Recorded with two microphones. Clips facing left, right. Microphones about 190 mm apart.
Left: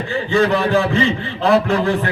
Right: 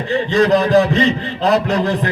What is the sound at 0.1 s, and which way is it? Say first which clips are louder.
A man's voice: right 3 dB; 35° right (ahead or behind).